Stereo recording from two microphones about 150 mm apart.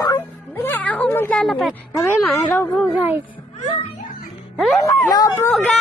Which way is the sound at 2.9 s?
10° right (ahead or behind).